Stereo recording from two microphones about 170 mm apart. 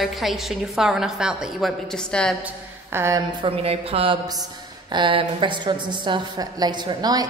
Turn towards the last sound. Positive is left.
turn(degrees=-25)  # may be behind; listen again after turning